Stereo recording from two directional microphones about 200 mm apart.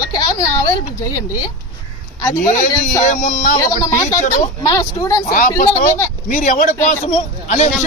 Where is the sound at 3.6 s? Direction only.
15° left (ahead or behind).